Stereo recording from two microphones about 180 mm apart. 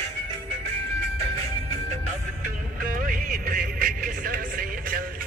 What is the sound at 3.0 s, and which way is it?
Music, 50° right (ahead or behind).